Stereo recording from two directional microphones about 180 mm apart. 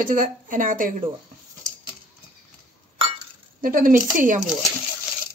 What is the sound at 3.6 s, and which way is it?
Speech, 50° right (ahead or behind).